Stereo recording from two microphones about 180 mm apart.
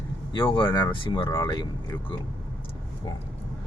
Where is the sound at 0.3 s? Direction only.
25° left (ahead or behind).